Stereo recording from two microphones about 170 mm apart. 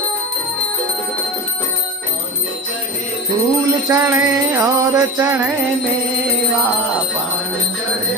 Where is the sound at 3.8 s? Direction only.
20° right (ahead or behind).